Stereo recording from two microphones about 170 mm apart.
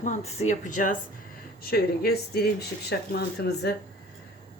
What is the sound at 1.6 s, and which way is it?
Speech, 65° left (ahead or behind).